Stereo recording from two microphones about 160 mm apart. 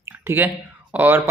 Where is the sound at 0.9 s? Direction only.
10° right (ahead or behind).